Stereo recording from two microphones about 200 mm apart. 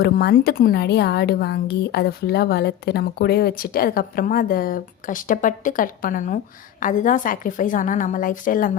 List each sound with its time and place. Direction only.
0.0 s a woman's voice: 50° left (ahead or behind)